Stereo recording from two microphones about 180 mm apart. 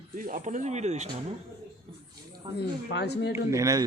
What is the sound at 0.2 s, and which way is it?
Speech, 50° right (ahead or behind).